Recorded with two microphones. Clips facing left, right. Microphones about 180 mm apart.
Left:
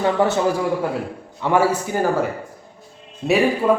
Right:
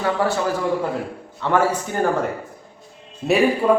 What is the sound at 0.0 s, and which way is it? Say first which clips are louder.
Speech: left 3 dB; 20° left (ahead or behind).